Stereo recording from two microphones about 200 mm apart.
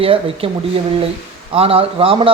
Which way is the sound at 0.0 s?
25° right (ahead or behind).